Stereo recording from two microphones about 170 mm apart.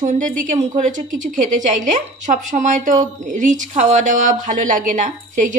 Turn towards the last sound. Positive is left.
turn(degrees=-50)  # may be behind; listen again after turning